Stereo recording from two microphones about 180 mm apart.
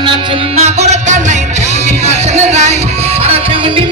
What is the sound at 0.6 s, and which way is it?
Music, 40° right (ahead or behind).